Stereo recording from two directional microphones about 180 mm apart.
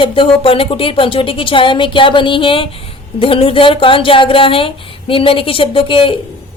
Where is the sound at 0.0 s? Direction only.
30° left (ahead or behind).